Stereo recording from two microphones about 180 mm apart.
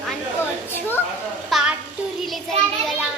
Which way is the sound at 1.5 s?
Centre (ahead or behind).